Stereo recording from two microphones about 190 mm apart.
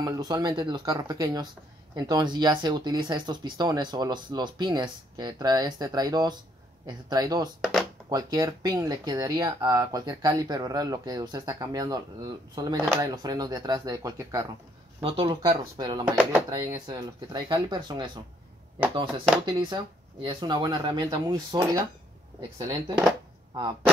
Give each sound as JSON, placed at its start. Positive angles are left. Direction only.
{"t": 0.0, "sound": "speech", "side_deg": -20}
{"t": 16.1, "sound": "speech", "side_deg": -10}
{"t": 16.4, "sound": "speech", "side_deg": -20}
{"t": 19.4, "sound": "speech", "side_deg": -25}